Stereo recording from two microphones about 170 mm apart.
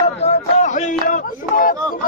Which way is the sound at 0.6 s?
45° left (ahead or behind).